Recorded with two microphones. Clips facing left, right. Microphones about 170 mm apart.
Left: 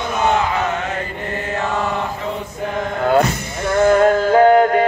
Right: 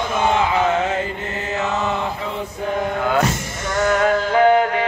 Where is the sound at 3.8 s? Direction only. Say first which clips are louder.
Left 5 dB; 40° left (ahead or behind).